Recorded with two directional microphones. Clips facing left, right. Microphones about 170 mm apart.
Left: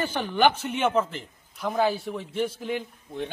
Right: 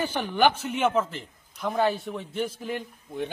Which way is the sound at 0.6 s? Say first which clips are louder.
Even; centre (ahead or behind).